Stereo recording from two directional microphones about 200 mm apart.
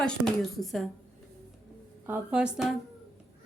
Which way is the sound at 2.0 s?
5° right (ahead or behind).